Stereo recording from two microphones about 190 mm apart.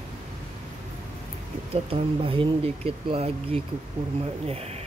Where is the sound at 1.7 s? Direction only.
30° right (ahead or behind).